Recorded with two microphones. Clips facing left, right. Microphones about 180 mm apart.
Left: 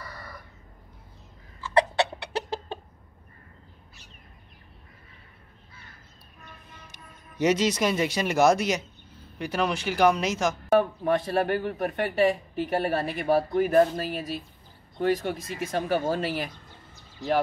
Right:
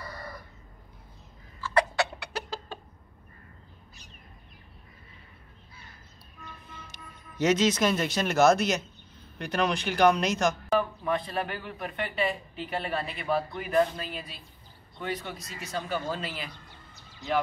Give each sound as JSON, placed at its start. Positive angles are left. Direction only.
{"t": 1.6, "sound": "chicken", "side_deg": 25}
{"t": 6.9, "sound": "speech", "side_deg": 10}
{"t": 10.8, "sound": "speech", "side_deg": 45}